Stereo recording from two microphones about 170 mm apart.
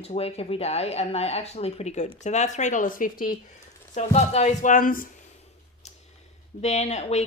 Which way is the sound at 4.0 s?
40° left (ahead or behind).